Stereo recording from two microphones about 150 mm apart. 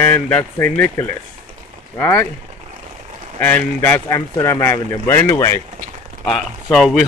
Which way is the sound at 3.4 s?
15° left (ahead or behind).